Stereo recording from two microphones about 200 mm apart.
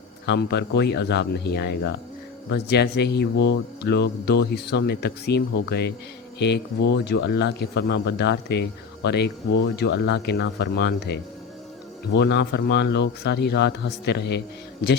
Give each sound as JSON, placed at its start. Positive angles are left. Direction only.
{"t": 0.3, "sound": "speech", "side_deg": 60}